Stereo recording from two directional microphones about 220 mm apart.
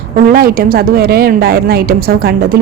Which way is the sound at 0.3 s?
40° right (ahead or behind).